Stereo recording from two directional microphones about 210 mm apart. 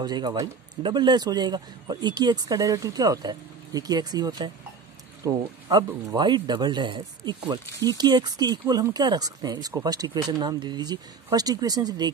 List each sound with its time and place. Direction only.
0.0 s speech: 20° right (ahead or behind)